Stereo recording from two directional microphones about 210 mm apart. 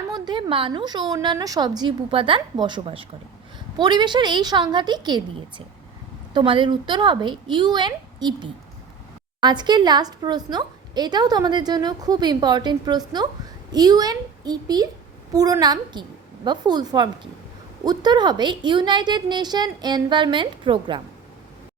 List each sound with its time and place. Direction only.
0.1 s a woman's voice: 20° right (ahead or behind)